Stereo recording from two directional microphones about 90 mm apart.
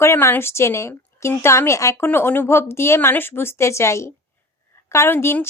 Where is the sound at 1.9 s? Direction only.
25° left (ahead or behind).